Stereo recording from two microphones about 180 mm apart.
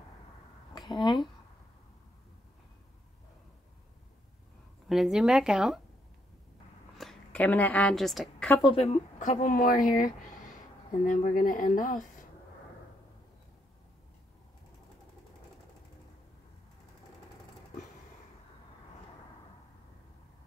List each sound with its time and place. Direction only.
0.7 s a sound: 25° left (ahead or behind)
4.8 s speech: centre (ahead or behind)
7.0 s a woman's voice: 5° left (ahead or behind)
8.6 s speech: 30° left (ahead or behind); by 12.3 s 50° left (ahead or behind)